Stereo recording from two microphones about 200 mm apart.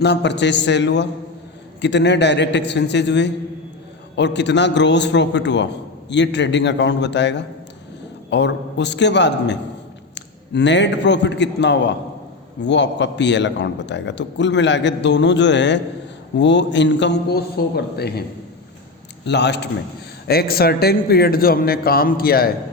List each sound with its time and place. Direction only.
0.0 s a man's voice: 60° left (ahead or behind)
19.2 s a man's voice: 60° left (ahead or behind)